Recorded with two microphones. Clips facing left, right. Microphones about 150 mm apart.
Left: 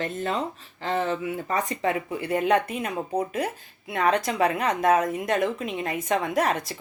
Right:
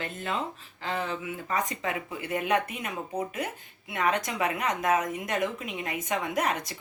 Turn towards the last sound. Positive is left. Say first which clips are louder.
# left 5 dB
turn(degrees=35)  # may be behind; listen again after turning